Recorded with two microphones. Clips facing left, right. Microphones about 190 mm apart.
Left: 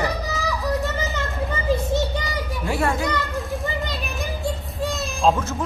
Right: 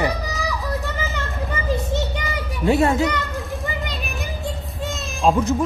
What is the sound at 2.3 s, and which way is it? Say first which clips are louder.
Children playing: right 6 dB; 20° right (ahead or behind).